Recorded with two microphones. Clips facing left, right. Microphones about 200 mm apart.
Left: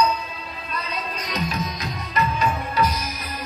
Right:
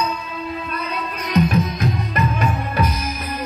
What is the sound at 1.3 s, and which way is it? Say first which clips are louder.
Music: right 10 dB; 55° right (ahead or behind).